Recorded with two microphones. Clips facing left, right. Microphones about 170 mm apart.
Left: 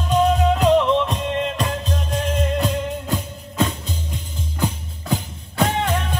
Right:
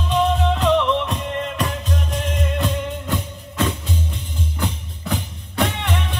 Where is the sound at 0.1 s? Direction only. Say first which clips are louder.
Left 2 dB; 40° left (ahead or behind).